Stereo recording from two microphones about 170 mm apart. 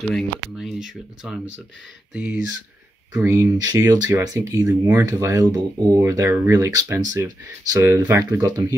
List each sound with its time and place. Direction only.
0.0 s speech: centre (ahead or behind); by 8.7 s 20° right (ahead or behind)